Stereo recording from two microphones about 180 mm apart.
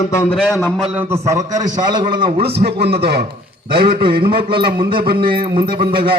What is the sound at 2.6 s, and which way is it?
Speech, 65° right (ahead or behind).